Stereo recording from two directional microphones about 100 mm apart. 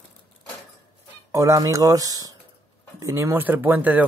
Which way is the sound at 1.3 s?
30° right (ahead or behind).